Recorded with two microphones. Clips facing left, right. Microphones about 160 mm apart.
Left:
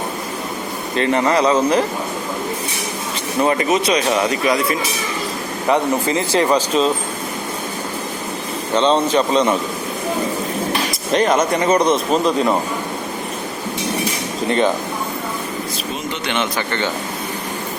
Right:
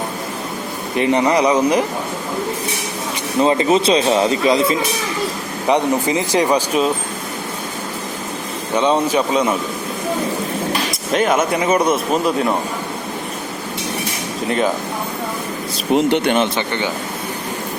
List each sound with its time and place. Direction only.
0.9 s speech: 15° right (ahead or behind)
3.4 s speech: 25° right (ahead or behind)
8.7 s speech: 10° right (ahead or behind)
11.1 s speech: 5° right (ahead or behind)
14.4 s speech: 5° right (ahead or behind)
15.9 s speech: 75° right (ahead or behind)
16.6 s speech: 15° right (ahead or behind)